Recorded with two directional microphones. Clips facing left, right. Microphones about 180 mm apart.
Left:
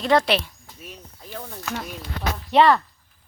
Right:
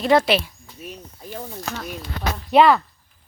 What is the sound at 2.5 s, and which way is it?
Speech, 10° right (ahead or behind).